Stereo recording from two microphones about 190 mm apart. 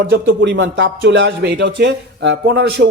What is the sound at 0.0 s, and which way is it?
Speech, 65° right (ahead or behind).